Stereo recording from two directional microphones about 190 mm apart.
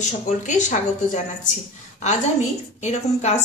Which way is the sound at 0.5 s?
40° left (ahead or behind).